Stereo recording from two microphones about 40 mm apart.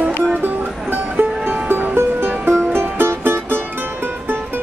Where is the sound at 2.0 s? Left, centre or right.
Right.